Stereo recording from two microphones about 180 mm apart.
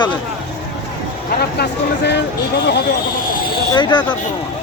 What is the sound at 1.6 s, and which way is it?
Speech, 70° left (ahead or behind).